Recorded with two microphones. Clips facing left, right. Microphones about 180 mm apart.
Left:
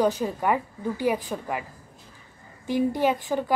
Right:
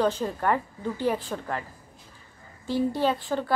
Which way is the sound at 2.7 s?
15° left (ahead or behind).